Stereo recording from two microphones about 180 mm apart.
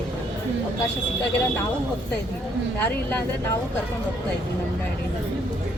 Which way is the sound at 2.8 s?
10° left (ahead or behind).